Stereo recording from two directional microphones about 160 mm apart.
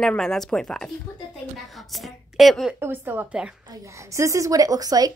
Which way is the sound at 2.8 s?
10° right (ahead or behind).